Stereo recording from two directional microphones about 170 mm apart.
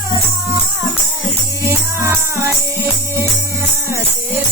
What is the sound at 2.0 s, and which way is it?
Music, 15° right (ahead or behind).